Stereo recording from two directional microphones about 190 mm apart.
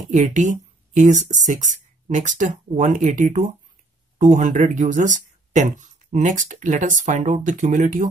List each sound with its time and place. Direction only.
0.1 s speech: 40° right (ahead or behind)